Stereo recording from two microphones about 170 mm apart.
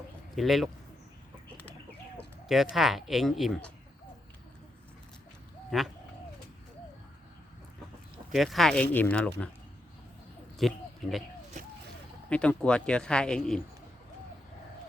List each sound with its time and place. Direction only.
0.3 s speech: centre (ahead or behind)
2.5 s speech: centre (ahead or behind)
5.7 s speech: centre (ahead or behind)
8.3 s speech: centre (ahead or behind)
10.6 s speech: centre (ahead or behind)
12.3 s speech: 5° left (ahead or behind)